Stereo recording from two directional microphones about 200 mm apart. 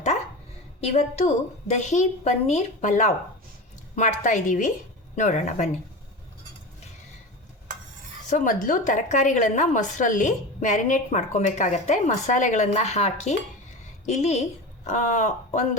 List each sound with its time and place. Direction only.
0.8 s a woman's voice: 30° left (ahead or behind)
8.3 s a woman's voice: 40° left (ahead or behind)